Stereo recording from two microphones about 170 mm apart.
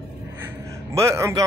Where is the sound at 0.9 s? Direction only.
15° right (ahead or behind).